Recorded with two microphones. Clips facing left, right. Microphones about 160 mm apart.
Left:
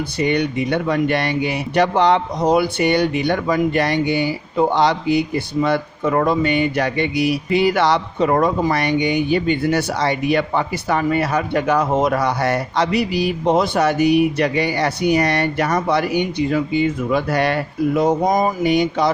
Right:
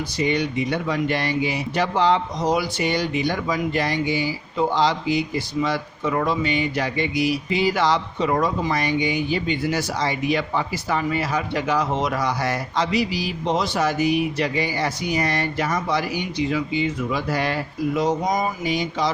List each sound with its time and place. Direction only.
0.2 s speech: 60° left (ahead or behind)